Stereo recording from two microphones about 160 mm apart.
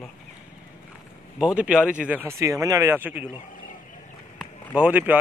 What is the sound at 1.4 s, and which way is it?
Speech, 5° right (ahead or behind).